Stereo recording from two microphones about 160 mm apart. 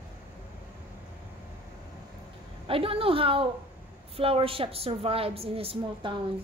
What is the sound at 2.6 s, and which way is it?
A woman's voice, 35° right (ahead or behind).